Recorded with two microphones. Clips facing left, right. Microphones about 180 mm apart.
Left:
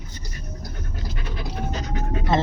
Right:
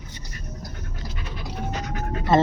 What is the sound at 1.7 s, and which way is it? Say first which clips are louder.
Dog: left 1 dB; 30° left (ahead or behind).